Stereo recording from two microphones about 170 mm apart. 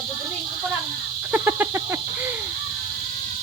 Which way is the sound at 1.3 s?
10° right (ahead or behind).